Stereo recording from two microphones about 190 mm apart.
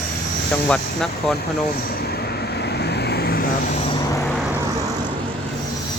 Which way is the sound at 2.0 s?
60° left (ahead or behind).